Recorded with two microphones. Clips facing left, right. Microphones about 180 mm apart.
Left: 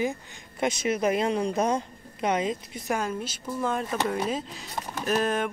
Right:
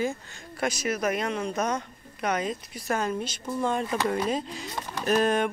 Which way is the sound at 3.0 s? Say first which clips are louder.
Right 1 dB; 5° left (ahead or behind).